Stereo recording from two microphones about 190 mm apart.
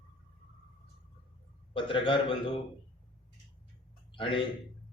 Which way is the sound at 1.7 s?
25° left (ahead or behind).